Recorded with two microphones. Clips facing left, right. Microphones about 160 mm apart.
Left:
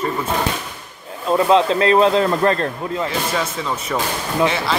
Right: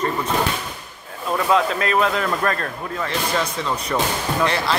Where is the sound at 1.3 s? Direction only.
25° left (ahead or behind).